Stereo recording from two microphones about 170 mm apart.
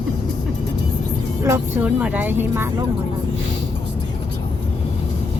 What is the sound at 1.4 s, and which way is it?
Speech, 15° right (ahead or behind).